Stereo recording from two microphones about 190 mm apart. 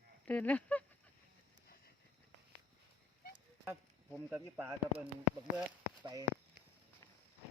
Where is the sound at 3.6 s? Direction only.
10° right (ahead or behind).